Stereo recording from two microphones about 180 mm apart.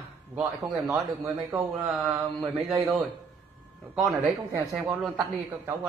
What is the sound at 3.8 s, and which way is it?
Mantra, centre (ahead or behind).